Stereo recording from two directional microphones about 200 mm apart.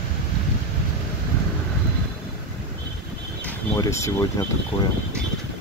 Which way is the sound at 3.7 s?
15° left (ahead or behind).